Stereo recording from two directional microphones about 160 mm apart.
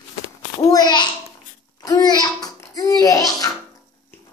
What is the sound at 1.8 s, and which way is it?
Babbling, 25° left (ahead or behind).